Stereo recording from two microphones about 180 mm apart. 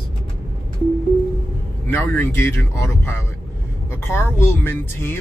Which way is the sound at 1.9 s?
10° left (ahead or behind).